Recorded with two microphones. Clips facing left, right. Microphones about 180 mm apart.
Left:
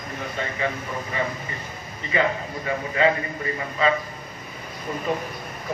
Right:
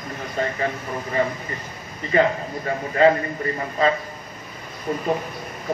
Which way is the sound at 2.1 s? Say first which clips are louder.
Right 4 dB; 40° right (ahead or behind).